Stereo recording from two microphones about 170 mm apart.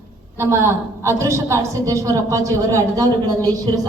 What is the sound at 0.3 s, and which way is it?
A woman's voice, 15° right (ahead or behind).